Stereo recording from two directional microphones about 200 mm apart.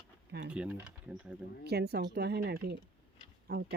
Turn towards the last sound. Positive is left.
turn(degrees=-55)  # may be behind; listen again after turning